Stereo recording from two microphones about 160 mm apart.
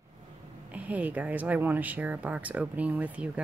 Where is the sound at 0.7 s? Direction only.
10° right (ahead or behind).